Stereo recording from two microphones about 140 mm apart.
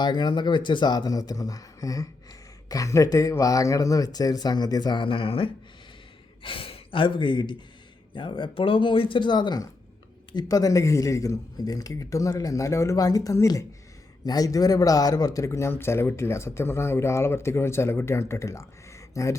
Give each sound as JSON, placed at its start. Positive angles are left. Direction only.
{"t": 0.0, "sound": "speech", "side_deg": 30}